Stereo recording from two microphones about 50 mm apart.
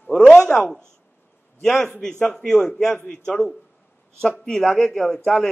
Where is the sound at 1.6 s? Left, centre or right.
Centre.